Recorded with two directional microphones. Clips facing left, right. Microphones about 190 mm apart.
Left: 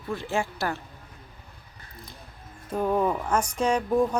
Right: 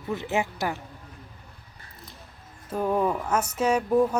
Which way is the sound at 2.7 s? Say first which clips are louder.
Even; 5° right (ahead or behind).